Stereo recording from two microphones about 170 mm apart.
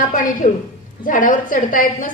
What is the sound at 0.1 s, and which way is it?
A woman's voice, 50° left (ahead or behind).